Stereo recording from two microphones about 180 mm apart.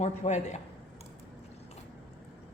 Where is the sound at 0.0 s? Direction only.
40° left (ahead or behind).